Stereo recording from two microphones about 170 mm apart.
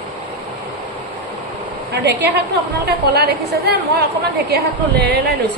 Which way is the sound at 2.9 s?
70° right (ahead or behind).